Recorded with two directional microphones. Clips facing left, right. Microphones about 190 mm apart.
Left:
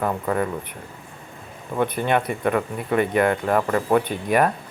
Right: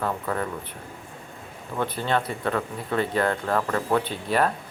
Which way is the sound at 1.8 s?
15° left (ahead or behind).